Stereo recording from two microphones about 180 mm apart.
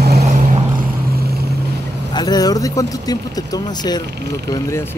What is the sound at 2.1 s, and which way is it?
Speech, 20° left (ahead or behind).